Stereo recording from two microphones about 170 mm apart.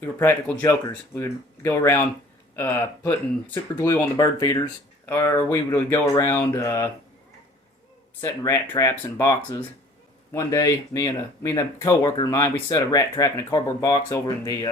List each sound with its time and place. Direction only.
0.0 s speech: 10° left (ahead or behind)
8.2 s speech: 15° left (ahead or behind)